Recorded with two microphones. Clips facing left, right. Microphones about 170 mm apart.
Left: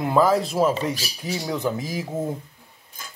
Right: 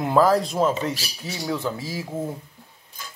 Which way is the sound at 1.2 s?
15° left (ahead or behind).